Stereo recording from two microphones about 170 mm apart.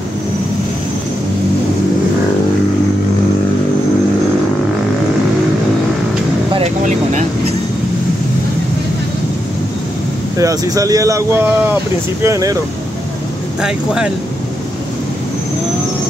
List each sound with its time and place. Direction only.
6.8 s air conditioning: 45° right (ahead or behind)
10.3 s speech: 20° right (ahead or behind)
13.6 s speech: 5° right (ahead or behind)